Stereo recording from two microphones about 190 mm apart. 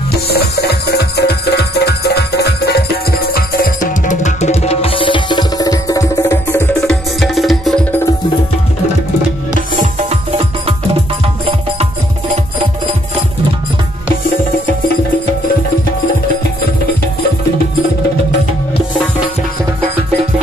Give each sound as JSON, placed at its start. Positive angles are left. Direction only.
{"t": 0.3, "sound": "music", "side_deg": 55}
{"t": 6.9, "sound": "music", "side_deg": 0}